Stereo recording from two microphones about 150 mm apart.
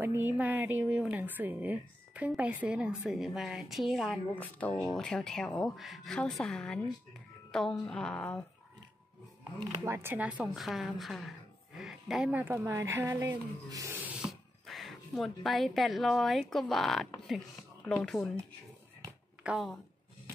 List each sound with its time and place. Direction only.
0.0 s a woman's voice: 15° right (ahead or behind)
4.4 s a woman's voice: 10° left (ahead or behind)
9.8 s a woman's voice: 15° right (ahead or behind)
13.7 s a sound: 20° right (ahead or behind)
14.0 s a woman's voice: centre (ahead or behind)
19.4 s a woman's voice: centre (ahead or behind)